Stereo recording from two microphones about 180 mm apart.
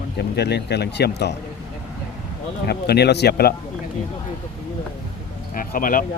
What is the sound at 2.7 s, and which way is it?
Speech, 65° left (ahead or behind).